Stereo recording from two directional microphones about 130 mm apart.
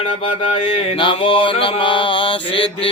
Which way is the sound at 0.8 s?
45° left (ahead or behind).